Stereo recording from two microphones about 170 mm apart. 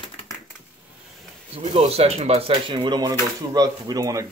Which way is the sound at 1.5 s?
35° right (ahead or behind).